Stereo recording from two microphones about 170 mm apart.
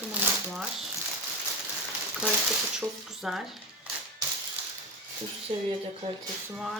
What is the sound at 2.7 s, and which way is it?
Speech, 5° right (ahead or behind).